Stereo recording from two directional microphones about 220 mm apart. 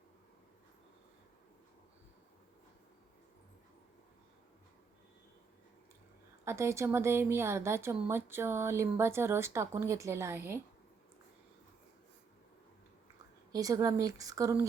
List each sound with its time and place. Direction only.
6.4 s speech: 10° right (ahead or behind)
13.5 s speech: 15° right (ahead or behind)